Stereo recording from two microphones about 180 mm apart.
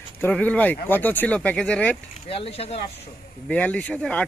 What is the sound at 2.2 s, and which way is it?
Speech, 30° left (ahead or behind).